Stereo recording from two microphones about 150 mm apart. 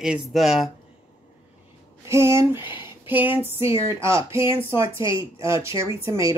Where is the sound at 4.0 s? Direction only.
20° right (ahead or behind).